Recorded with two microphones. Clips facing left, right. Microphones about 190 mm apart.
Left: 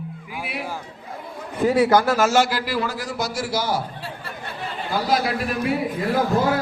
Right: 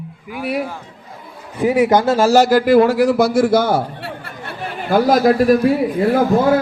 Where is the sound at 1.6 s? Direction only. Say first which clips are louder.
Right 3 dB; 15° right (ahead or behind); by 6.1 s 40° right (ahead or behind).